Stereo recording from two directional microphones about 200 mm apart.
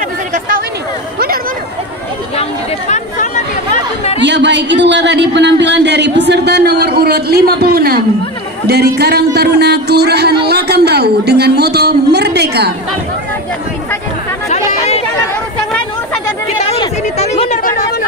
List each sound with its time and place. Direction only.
2.9 s chatter: 35° left (ahead or behind)
4.2 s speech: 60° right (ahead or behind)
14.7 s chatter: 35° left (ahead or behind)
16.6 s a sound: 30° left (ahead or behind)